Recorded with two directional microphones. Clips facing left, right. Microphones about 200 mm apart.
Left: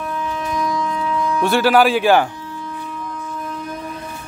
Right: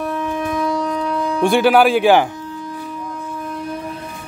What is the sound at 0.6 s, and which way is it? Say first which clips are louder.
Wind instrument: even; 30° right (ahead or behind).